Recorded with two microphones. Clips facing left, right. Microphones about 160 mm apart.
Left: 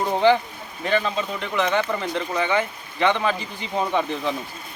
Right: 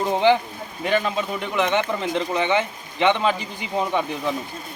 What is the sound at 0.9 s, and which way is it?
Speech, 10° right (ahead or behind).